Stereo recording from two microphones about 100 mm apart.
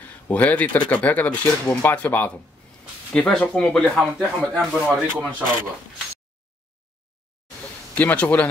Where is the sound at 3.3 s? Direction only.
10° left (ahead or behind).